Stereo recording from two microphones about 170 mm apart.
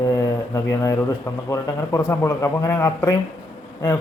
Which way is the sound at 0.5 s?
20° left (ahead or behind).